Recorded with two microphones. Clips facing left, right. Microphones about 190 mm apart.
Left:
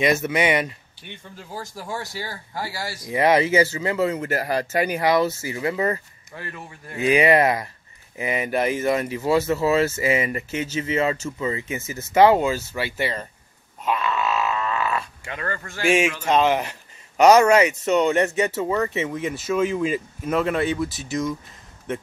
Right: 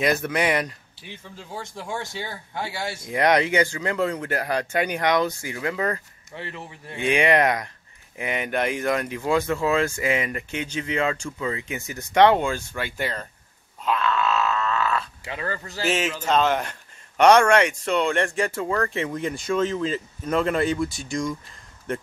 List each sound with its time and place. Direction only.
0.0 s speech: centre (ahead or behind)
6.3 s a man's voice: 25° right (ahead or behind)
7.0 s speech: 5° left (ahead or behind)
13.8 s grunt: 5° left (ahead or behind)
15.8 s speech: 10° left (ahead or behind)